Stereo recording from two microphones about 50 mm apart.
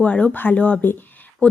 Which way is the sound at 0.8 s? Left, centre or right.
Left.